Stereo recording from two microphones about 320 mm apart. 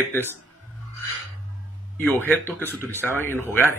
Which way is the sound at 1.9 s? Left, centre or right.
Centre.